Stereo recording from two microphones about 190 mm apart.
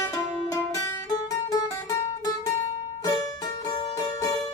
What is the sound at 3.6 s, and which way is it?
Music, 20° left (ahead or behind).